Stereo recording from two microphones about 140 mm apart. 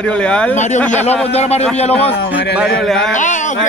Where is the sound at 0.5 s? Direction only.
60° left (ahead or behind).